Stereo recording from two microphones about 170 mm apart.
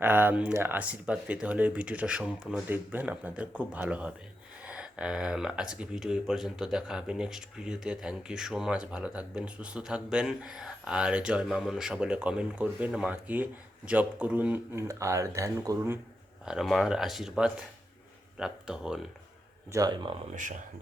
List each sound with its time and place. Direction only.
0.0 s speech: 10° right (ahead or behind)
16.5 s speech: centre (ahead or behind)
19.7 s speech: 25° right (ahead or behind)
20.3 s speech: 50° right (ahead or behind)